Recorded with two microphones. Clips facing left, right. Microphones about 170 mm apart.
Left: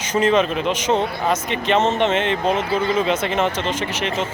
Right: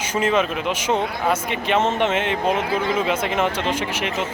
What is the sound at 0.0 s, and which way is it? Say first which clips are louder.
Speech: left 3 dB; 10° right (ahead or behind).